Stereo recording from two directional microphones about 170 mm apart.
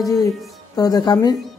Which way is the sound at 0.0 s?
20° left (ahead or behind).